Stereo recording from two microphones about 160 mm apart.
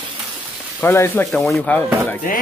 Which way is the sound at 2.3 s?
60° left (ahead or behind).